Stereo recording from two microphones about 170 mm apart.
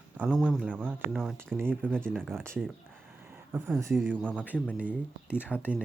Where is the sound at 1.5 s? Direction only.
10° right (ahead or behind).